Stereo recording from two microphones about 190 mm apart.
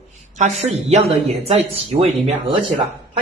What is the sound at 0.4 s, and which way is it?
Speech, 35° right (ahead or behind).